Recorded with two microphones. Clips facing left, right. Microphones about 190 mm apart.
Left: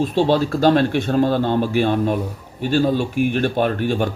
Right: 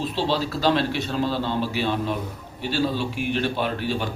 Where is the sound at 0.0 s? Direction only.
50° left (ahead or behind).